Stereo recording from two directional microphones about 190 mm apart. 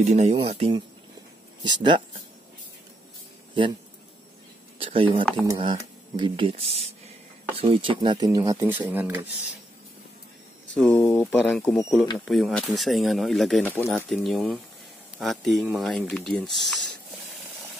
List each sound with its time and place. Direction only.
0.0 s speech: 35° right (ahead or behind)
4.7 s speech: 30° right (ahead or behind); by 9.3 s 10° right (ahead or behind)
10.7 s speech: 5° left (ahead or behind)